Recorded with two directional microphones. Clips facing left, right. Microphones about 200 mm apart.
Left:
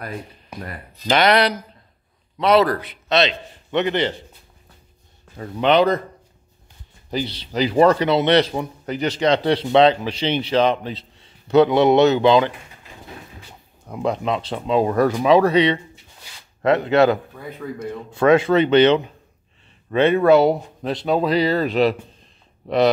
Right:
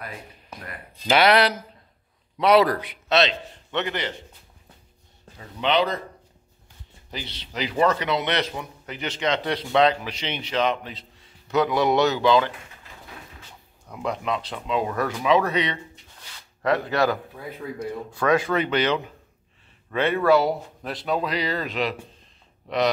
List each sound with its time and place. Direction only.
1.0 s a man's voice: 5° right (ahead or behind)
3.7 s speech: 25° left (ahead or behind)
5.4 s speech: 50° left (ahead or behind)
7.1 s speech: 35° left (ahead or behind); by 12.5 s 20° left (ahead or behind)
13.8 s speech: 30° left (ahead or behind)